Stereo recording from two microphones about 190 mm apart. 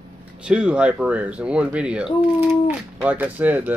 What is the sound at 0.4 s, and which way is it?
Speech, 5° right (ahead or behind).